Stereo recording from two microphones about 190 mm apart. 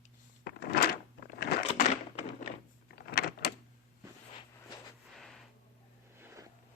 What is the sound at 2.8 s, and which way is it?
Door, 55° left (ahead or behind).